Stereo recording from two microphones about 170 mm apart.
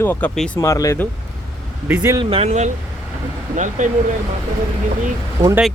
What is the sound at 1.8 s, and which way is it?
Speech, 10° right (ahead or behind).